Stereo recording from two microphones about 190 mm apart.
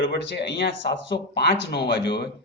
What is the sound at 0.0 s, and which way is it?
A man's voice, 65° left (ahead or behind).